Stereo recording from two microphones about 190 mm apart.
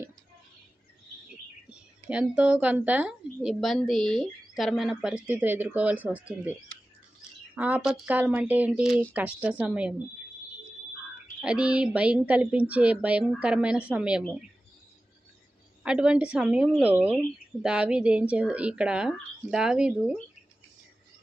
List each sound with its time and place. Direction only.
1.7 s a woman's voice: 5° right (ahead or behind)
7.5 s a woman's voice: 5° right (ahead or behind)
11.4 s speech: 5° right (ahead or behind)
15.8 s speech: 5° right (ahead or behind)